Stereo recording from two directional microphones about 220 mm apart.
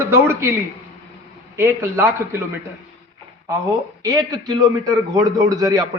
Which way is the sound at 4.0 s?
15° right (ahead or behind).